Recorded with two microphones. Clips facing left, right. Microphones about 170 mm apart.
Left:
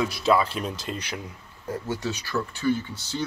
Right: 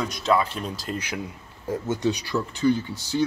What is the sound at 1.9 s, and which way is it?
Speech, 20° right (ahead or behind).